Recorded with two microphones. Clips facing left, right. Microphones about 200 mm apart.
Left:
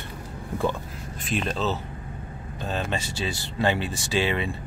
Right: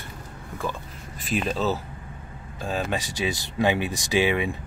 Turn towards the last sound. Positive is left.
turn(degrees=-15)  # may be behind; listen again after turning